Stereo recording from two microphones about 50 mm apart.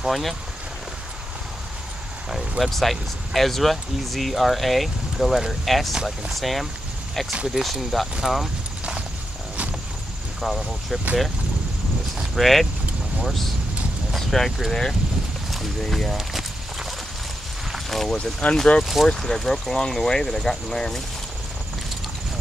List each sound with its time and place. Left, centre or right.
0.0 s speech: centre
2.6 s speech: centre
10.4 s speech: centre
12.4 s speech: centre
14.1 s a sound: centre
14.7 s speech: centre
17.7 s a sound: centre
18.1 s speech: centre